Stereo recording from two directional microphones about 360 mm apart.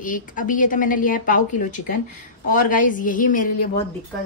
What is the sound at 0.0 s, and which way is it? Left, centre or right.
A woman's voice, left.